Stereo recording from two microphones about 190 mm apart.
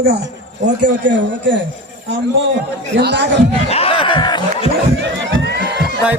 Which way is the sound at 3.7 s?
30° left (ahead or behind).